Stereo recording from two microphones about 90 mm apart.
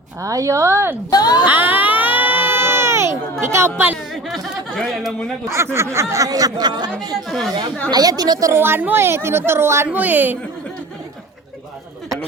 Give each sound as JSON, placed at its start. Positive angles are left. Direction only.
{"t": 0.2, "sound": "speech", "side_deg": -40}
{"t": 1.1, "sound": "speech", "side_deg": 45}
{"t": 1.5, "sound": "baby cry", "side_deg": -20}
{"t": 3.4, "sound": "a woman's voice", "side_deg": -30}
{"t": 4.1, "sound": "a sound", "side_deg": 5}
{"t": 5.7, "sound": "speech", "side_deg": -30}
{"t": 7.3, "sound": "speech", "side_deg": 0}
{"t": 7.9, "sound": "a woman's voice", "side_deg": -50}
{"t": 8.5, "sound": "a woman's voice", "side_deg": -25}